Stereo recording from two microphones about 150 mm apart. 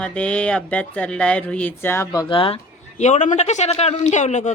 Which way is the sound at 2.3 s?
35° left (ahead or behind).